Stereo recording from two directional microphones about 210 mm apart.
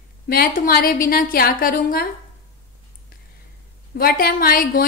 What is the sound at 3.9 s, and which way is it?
Speech, 45° left (ahead or behind).